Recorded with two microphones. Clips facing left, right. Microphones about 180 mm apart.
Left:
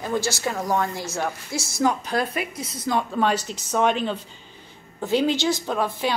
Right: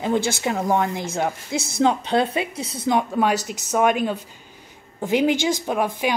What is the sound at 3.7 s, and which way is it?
A woman's voice, 10° right (ahead or behind).